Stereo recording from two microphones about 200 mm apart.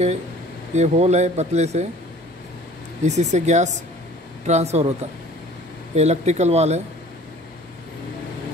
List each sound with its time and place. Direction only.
0.7 s speech: 35° right (ahead or behind)
3.0 s speech: 35° right (ahead or behind)
5.9 s speech: 35° right (ahead or behind)